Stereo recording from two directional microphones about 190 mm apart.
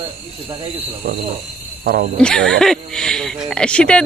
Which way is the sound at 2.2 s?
5° left (ahead or behind).